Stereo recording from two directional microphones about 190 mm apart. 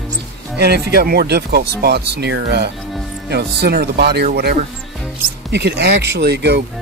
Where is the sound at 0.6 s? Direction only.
60° right (ahead or behind).